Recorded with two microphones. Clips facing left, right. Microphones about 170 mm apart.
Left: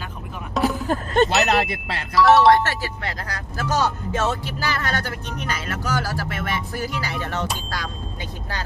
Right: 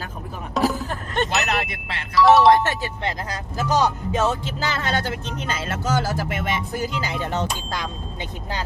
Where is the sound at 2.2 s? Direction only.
Centre (ahead or behind).